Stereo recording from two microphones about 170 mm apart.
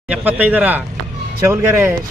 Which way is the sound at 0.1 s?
10° right (ahead or behind).